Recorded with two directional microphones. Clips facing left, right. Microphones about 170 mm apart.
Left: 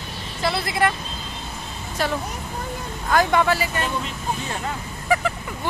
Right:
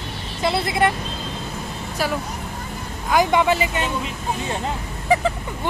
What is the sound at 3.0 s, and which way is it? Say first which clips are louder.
Speech: right 1 dB; 15° right (ahead or behind).